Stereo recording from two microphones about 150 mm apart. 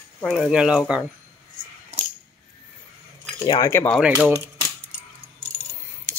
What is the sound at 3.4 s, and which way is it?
Speech, 25° left (ahead or behind).